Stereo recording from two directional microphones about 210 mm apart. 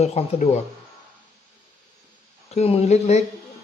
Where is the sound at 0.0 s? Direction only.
30° left (ahead or behind).